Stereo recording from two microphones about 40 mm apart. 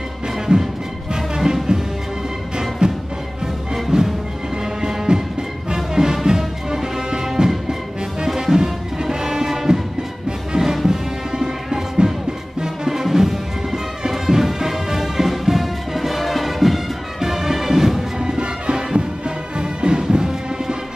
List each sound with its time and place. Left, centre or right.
0.5 s music: right
2.8 s music: right
6.2 s music: centre